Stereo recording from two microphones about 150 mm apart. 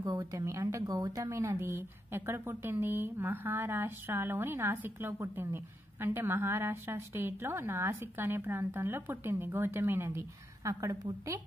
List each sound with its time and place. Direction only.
0.2 s a woman's voice: 20° right (ahead or behind)